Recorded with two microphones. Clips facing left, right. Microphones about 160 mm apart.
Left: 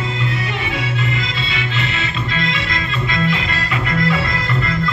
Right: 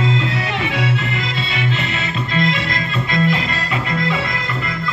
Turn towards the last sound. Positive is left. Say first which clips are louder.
# left 2 dB
turn(degrees=-20)  # may be behind; listen again after turning